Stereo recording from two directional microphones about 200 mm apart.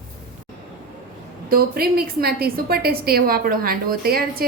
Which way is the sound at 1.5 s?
50° right (ahead or behind).